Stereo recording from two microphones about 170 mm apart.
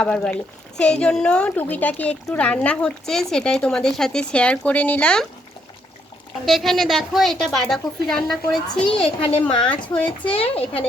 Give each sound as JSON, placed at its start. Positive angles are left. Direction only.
{"t": 0.0, "sound": "speech", "side_deg": 5}
{"t": 6.4, "sound": "a woman's voice", "side_deg": 0}
{"t": 9.0, "sound": "speech", "side_deg": 30}
{"t": 9.4, "sound": "speech", "side_deg": 5}
{"t": 10.1, "sound": "speech", "side_deg": 35}